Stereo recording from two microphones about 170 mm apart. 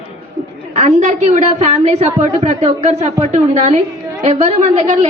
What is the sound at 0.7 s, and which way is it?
A woman's voice, 45° right (ahead or behind).